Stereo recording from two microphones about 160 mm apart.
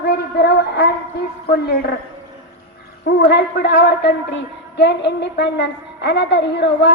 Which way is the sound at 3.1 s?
90° left.